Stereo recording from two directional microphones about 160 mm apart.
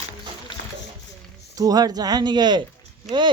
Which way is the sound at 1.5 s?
25° right (ahead or behind).